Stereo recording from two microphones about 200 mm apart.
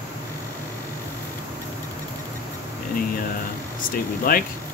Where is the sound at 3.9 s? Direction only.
45° left (ahead or behind).